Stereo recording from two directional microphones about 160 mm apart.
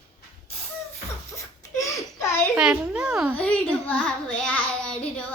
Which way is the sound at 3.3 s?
10° left (ahead or behind).